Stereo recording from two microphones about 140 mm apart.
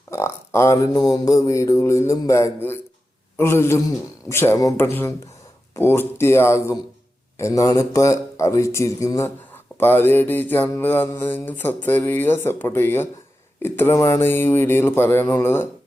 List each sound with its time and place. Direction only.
0.1 s speech: 20° left (ahead or behind)
4.3 s mantra: 20° left (ahead or behind)
7.3 s speech: 20° left (ahead or behind)
9.7 s mantra: 15° left (ahead or behind)